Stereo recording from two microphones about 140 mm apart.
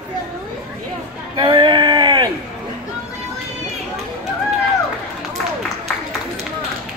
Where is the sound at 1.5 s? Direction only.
35° right (ahead or behind).